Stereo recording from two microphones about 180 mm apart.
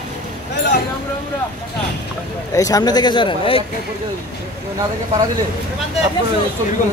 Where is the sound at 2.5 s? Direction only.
20° left (ahead or behind).